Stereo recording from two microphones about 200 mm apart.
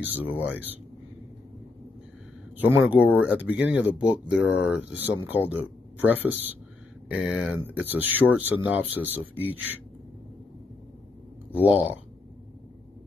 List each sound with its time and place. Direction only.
0.0 s speech: 10° right (ahead or behind)
2.5 s speech: 10° right (ahead or behind)
11.6 s speech: 10° right (ahead or behind)